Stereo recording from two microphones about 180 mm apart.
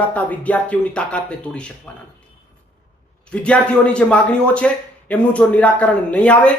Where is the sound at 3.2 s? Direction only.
5° left (ahead or behind).